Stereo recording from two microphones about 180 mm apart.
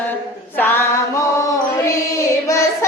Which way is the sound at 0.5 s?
10° left (ahead or behind).